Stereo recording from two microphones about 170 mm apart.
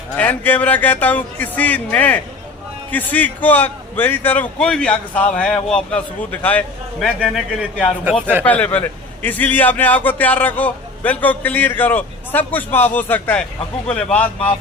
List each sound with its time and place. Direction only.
0.2 s a man's voice: 10° left (ahead or behind)